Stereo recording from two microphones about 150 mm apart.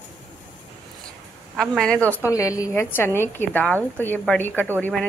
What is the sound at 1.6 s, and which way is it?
Speech, 5° left (ahead or behind).